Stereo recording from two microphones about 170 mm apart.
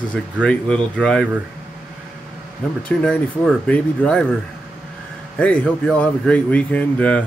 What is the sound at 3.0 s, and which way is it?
Speech, 5° left (ahead or behind).